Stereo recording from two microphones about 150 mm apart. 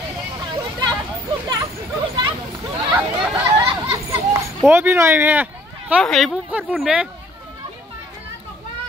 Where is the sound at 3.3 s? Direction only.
25° right (ahead or behind).